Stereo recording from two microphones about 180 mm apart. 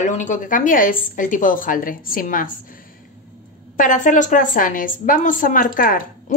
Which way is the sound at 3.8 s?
45° left (ahead or behind).